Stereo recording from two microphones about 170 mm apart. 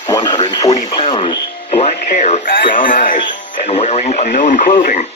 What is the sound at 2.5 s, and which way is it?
Speech, 55° left (ahead or behind).